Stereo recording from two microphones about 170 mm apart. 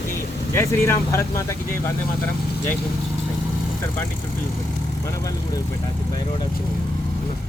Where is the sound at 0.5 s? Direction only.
15° left (ahead or behind).